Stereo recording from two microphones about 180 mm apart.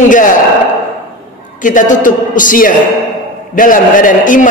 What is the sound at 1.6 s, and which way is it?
A man's voice, 45° left (ahead or behind).